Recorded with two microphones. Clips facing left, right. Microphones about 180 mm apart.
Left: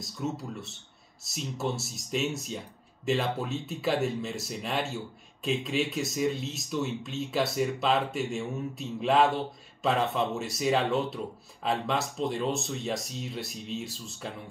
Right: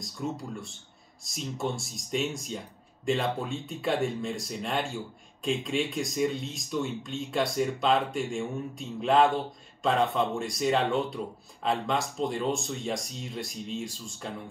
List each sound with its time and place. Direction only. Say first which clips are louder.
0.0 s speech: even; 5° left (ahead or behind)